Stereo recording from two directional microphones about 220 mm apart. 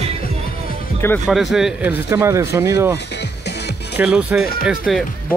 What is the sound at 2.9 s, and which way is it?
Music, 50° left (ahead or behind).